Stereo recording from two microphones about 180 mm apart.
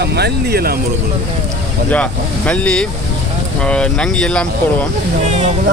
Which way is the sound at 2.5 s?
5° left (ahead or behind).